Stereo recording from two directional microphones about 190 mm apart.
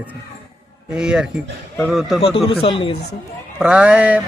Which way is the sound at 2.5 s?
30° left (ahead or behind).